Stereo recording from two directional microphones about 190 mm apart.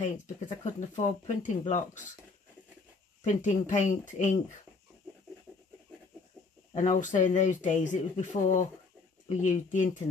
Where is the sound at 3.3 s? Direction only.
40° left (ahead or behind).